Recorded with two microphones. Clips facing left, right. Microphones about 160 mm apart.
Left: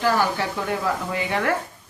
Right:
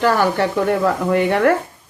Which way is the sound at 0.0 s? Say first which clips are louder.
Right 5 dB; 60° right (ahead or behind).